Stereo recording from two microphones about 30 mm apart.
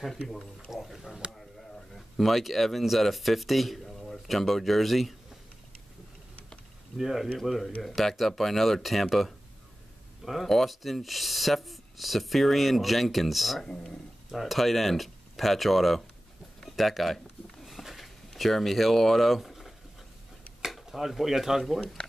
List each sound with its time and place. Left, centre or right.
0.8 s speech: centre
3.8 s a sound: centre
4.3 s speech: centre
7.0 s speech: centre
7.3 s speech: centre
16.6 s a sound: centre
20.9 s speech: centre